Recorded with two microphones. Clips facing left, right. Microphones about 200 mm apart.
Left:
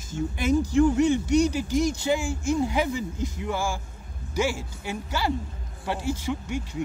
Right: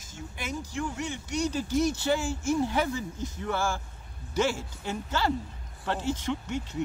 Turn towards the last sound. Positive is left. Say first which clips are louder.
# left 1 dB
turn(degrees=10)  # may be behind; listen again after turning